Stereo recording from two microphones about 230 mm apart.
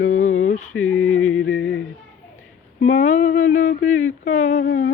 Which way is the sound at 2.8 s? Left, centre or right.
Left.